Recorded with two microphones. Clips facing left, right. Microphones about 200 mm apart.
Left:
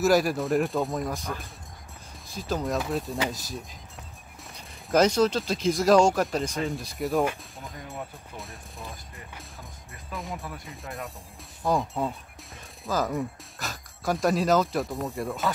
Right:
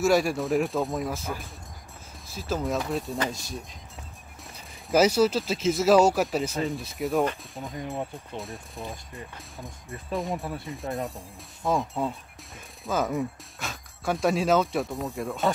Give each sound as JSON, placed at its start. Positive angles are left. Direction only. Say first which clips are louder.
{"t": 0.0, "sound": "speech", "louder": "even", "side_deg": 0}
{"t": 7.7, "sound": "speech", "louder": "right 6 dB", "side_deg": -25}
{"t": 8.4, "sound": "speech", "louder": "right 5 dB", "side_deg": 0}
{"t": 10.3, "sound": "speech", "louder": "right 5 dB", "side_deg": -30}
{"t": 11.6, "sound": "speech", "louder": "even", "side_deg": 0}